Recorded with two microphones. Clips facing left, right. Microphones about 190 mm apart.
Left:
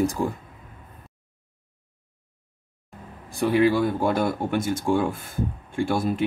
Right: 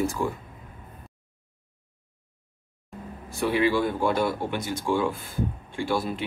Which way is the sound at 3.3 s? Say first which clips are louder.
Left 3 dB; 35° left (ahead or behind).